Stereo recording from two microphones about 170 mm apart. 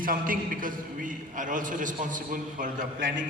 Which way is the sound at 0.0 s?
55° right (ahead or behind).